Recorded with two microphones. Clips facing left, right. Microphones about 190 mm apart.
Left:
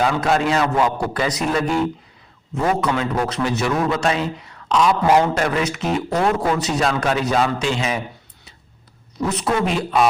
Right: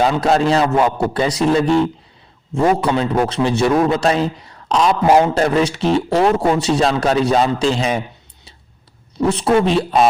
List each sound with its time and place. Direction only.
0.0 s a man's voice: 30° right (ahead or behind)
9.1 s speech: 30° right (ahead or behind)